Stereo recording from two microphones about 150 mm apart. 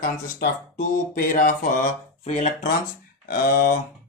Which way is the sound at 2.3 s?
50° left (ahead or behind).